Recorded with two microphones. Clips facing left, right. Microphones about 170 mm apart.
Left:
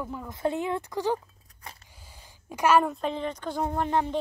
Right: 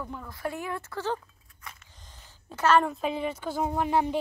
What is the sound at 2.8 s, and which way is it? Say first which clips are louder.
Speech: even; 5° right (ahead or behind).